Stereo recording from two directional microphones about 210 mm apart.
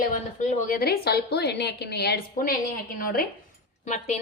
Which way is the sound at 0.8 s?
50° left (ahead or behind).